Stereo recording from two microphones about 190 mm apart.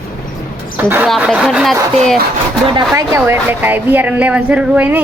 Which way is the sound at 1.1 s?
5° right (ahead or behind).